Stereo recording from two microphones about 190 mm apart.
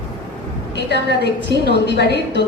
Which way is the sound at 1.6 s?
60° left (ahead or behind).